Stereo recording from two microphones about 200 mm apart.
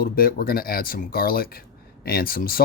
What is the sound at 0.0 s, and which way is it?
Speech, 45° left (ahead or behind).